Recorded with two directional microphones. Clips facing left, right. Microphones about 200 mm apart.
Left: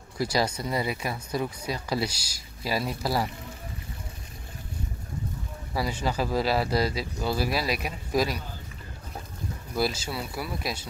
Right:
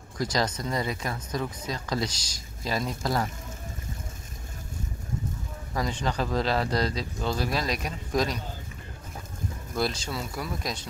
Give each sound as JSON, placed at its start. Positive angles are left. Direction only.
{"t": 0.2, "sound": "speech", "side_deg": 10}
{"t": 5.7, "sound": "speech", "side_deg": 10}
{"t": 9.8, "sound": "speech", "side_deg": 5}